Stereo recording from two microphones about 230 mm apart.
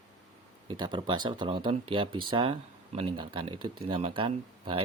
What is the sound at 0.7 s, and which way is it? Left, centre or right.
Speech, centre.